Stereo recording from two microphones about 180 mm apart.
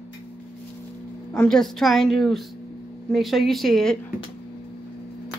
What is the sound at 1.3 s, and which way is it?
A woman's voice, 5° left (ahead or behind).